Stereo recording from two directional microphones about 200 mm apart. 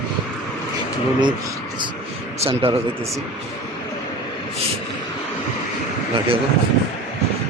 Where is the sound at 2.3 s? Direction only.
30° right (ahead or behind).